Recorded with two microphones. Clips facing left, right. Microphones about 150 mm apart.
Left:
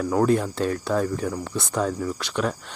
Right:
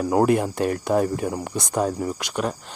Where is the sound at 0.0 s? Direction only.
20° right (ahead or behind).